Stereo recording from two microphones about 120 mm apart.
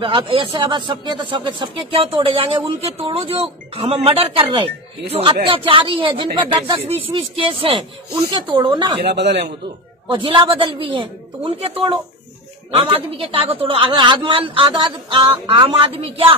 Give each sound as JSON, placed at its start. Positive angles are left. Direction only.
{"t": 0.0, "sound": "speech", "side_deg": -45}
{"t": 10.0, "sound": "speech", "side_deg": -45}